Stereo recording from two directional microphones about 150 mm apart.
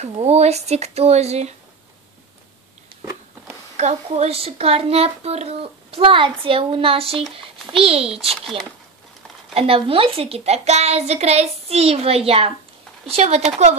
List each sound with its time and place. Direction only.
0.0 s speech: 45° right (ahead or behind)
3.7 s a child's voice: 45° right (ahead or behind)
8.4 s speech: centre (ahead or behind)
9.5 s a child's voice: 40° right (ahead or behind)